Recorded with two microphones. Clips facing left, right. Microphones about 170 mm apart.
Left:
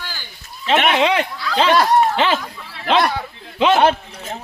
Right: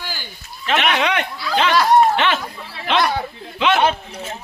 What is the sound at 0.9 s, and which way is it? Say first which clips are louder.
Speech: left 3 dB; 30° left (ahead or behind).